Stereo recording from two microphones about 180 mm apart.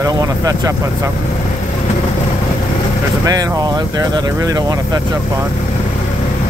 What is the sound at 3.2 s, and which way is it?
Speech, 20° right (ahead or behind).